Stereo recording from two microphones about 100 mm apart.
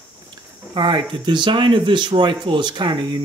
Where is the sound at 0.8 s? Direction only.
50° right (ahead or behind).